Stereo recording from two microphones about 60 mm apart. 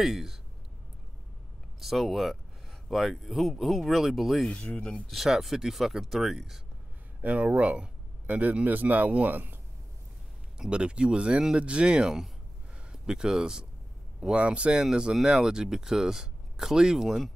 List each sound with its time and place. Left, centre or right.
0.0 s speech: centre
1.8 s speech: centre
4.5 s speech: left
5.1 s speech: centre
7.2 s speech: right
10.6 s speech: centre